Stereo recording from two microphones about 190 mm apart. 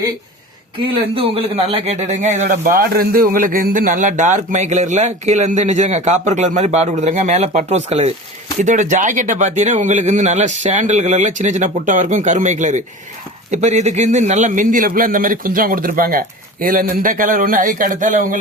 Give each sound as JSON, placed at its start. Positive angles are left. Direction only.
{"t": 1.1, "sound": "a man's voice", "side_deg": -30}